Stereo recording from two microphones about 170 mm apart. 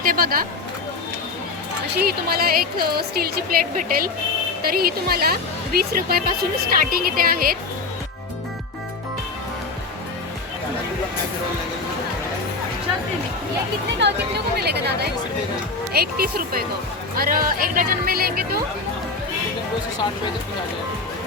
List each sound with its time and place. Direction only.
0.0 s speech: 55° right (ahead or behind)
2.0 s speech: 65° right (ahead or behind)
14.0 s speech: 75° right (ahead or behind)